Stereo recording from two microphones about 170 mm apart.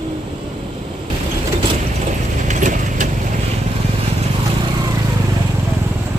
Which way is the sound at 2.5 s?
45° right (ahead or behind).